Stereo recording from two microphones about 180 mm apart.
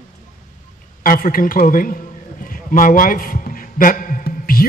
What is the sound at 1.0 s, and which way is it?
A man's voice, 50° left (ahead or behind).